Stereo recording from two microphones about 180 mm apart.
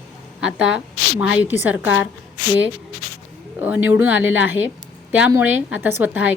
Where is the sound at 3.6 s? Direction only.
10° right (ahead or behind).